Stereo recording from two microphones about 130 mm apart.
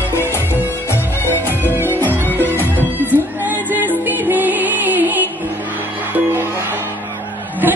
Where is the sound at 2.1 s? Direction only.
15° right (ahead or behind).